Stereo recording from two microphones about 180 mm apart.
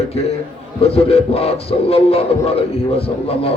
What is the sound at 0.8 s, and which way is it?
A man's voice, 35° left (ahead or behind).